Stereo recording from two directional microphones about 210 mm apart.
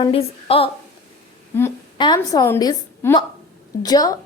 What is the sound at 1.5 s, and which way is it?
A woman's voice, 10° left (ahead or behind).